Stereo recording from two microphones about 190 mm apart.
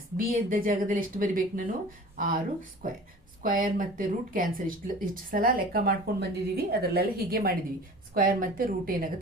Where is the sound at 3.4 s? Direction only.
45° right (ahead or behind).